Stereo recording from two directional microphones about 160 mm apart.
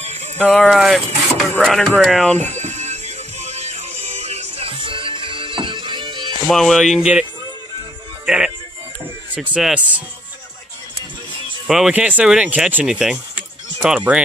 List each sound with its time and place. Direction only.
0.0 s a sound: 45° right (ahead or behind)
0.4 s speech: 5° left (ahead or behind)
2.5 s music: 45° right (ahead or behind); by 6.3 s 30° right (ahead or behind)
6.4 s speech: centre (ahead or behind)
9.3 s speech: 10° right (ahead or behind)
11.6 s speech: 5° right (ahead or behind)